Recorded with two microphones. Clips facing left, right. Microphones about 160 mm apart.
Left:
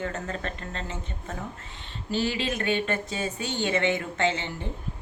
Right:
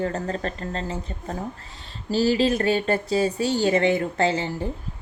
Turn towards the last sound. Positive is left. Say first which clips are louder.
# right 4 dB
turn(degrees=-35)  # may be behind; listen again after turning